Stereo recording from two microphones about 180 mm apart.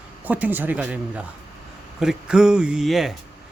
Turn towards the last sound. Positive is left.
turn(degrees=0)  # may be behind; listen again after turning